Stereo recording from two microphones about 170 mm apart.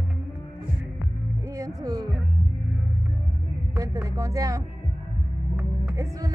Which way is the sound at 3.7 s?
20° right (ahead or behind).